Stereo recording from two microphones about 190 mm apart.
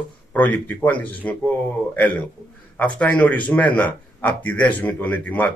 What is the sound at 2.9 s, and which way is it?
A man's voice, 10° left (ahead or behind).